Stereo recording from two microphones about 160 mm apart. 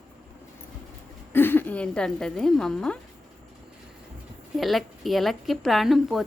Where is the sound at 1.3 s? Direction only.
10° left (ahead or behind).